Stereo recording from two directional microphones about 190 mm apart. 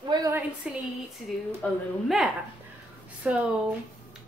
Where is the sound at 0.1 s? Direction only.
20° right (ahead or behind).